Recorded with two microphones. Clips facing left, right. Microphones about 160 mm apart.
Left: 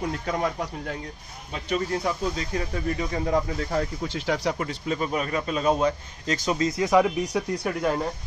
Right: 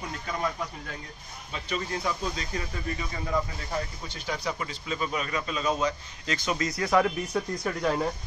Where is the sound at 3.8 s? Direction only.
85° left.